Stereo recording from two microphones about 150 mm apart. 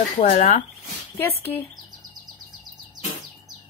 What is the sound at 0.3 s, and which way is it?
Speech, 40° left (ahead or behind).